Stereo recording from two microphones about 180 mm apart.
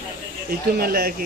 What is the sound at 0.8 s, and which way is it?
Speech, 55° right (ahead or behind).